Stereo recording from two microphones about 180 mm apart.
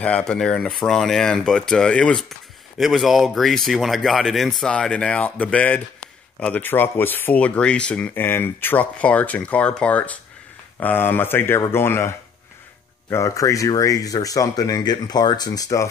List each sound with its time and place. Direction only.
0.0 s speech: 5° left (ahead or behind)
13.1 s speech: 15° left (ahead or behind)